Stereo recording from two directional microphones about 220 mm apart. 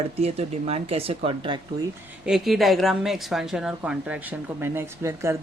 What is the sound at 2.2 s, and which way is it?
Speech, centre (ahead or behind).